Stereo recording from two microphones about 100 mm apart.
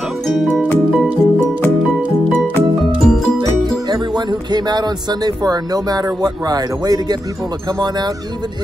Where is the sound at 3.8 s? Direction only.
45° right (ahead or behind).